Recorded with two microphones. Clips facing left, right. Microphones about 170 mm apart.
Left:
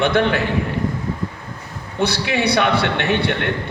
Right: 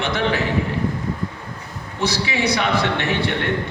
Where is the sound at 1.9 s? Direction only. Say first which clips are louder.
Left 3 dB; 60° left (ahead or behind).